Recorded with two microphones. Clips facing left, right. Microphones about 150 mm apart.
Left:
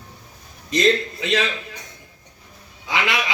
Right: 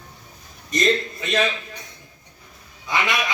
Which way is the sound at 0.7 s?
90° left.